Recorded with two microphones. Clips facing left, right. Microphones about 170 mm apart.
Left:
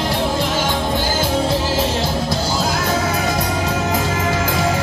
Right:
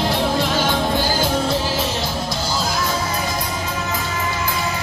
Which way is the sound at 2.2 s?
60° left (ahead or behind).